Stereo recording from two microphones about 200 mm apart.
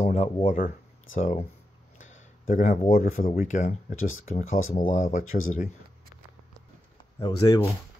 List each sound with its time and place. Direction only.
0.0 s speech: 30° left (ahead or behind)
2.4 s speech: 40° left (ahead or behind)
3.9 s speech: 90° left
4.7 s speech: 40° left (ahead or behind)
7.2 s speech: 20° left (ahead or behind)